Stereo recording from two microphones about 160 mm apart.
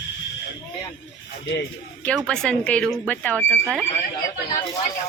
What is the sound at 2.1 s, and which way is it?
A woman's voice, 5° left (ahead or behind).